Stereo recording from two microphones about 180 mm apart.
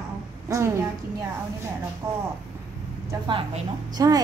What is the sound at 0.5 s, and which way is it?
Speech, 15° right (ahead or behind).